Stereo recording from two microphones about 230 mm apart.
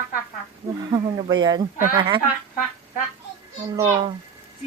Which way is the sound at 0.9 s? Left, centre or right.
Centre.